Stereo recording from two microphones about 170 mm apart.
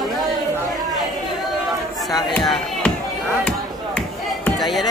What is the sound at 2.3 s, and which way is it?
Speech, centre (ahead or behind).